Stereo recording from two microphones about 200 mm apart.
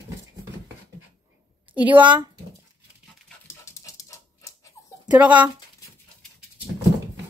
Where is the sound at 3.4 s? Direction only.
15° left (ahead or behind).